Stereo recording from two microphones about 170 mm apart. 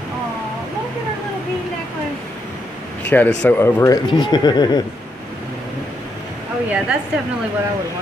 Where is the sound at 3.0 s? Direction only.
10° left (ahead or behind); by 4.8 s 25° left (ahead or behind).